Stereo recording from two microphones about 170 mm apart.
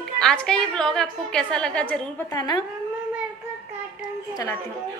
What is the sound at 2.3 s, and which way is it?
Speech, 25° left (ahead or behind).